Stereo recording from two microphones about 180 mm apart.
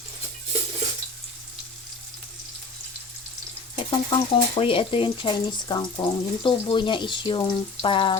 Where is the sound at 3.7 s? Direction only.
30° left (ahead or behind).